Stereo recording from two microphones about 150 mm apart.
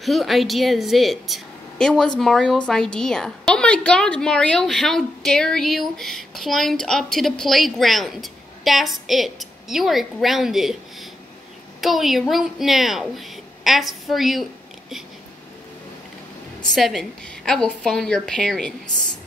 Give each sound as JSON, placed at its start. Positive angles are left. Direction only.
{"t": 0.0, "sound": "a woman's voice", "side_deg": 0}
{"t": 16.6, "sound": "a woman's voice", "side_deg": 0}